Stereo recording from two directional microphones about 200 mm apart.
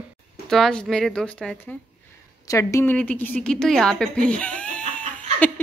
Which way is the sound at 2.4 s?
15° left (ahead or behind).